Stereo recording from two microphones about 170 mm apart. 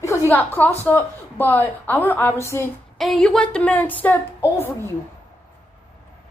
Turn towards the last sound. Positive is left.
turn(degrees=15)  # may be behind; listen again after turning